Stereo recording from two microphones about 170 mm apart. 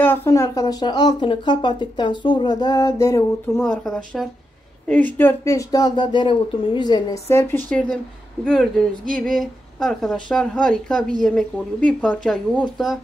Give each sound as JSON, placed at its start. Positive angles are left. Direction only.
{"t": 0.0, "sound": "speech", "side_deg": 10}